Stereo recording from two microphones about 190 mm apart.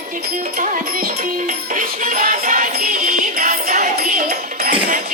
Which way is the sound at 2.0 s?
45° right (ahead or behind).